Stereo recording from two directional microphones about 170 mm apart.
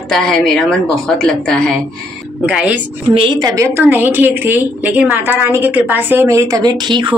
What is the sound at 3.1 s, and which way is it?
A woman's voice, 25° right (ahead or behind).